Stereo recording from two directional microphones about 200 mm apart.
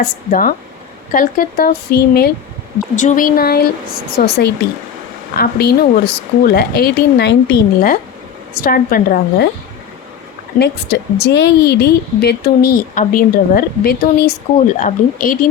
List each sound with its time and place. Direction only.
0.0 s a woman's voice: 45° left (ahead or behind)
2.9 s a woman's voice: 40° left (ahead or behind)
10.6 s a woman's voice: 60° left (ahead or behind); by 15.4 s 40° left (ahead or behind)